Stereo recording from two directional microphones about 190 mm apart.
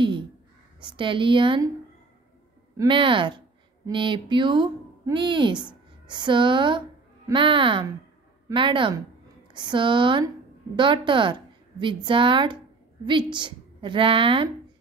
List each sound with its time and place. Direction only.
0.7 s speech: 25° right (ahead or behind)
2.8 s a woman's voice: 25° right (ahead or behind)